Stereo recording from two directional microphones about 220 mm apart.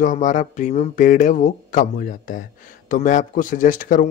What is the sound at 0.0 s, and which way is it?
Speech, 35° left (ahead or behind).